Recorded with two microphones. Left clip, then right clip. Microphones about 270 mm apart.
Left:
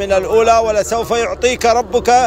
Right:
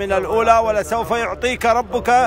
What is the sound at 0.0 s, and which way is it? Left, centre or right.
A man's voice, centre.